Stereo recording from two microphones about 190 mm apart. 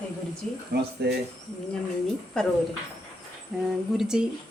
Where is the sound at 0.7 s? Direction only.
55° right (ahead or behind).